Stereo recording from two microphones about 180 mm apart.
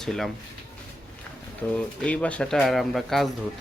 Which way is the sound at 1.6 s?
10° left (ahead or behind).